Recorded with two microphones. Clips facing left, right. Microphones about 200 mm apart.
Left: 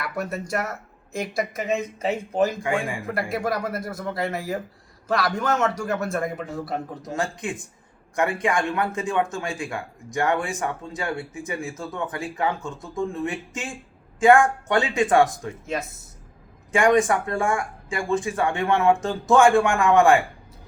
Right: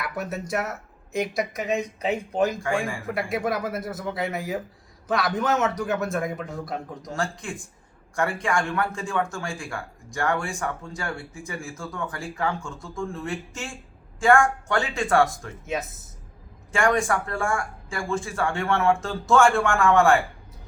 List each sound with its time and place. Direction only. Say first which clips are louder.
0.0 s a man's voice: left 1 dB; centre (ahead or behind)
7.1 s speech: left 2 dB; 20° left (ahead or behind)
15.6 s a man's voice: even; centre (ahead or behind)
16.7 s speech: left 4 dB; 20° left (ahead or behind)